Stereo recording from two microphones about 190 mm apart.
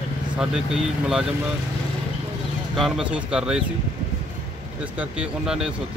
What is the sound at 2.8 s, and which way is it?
Speech, centre (ahead or behind).